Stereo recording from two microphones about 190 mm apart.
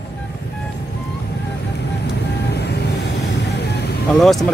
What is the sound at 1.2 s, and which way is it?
Vehicle, 60° left (ahead or behind).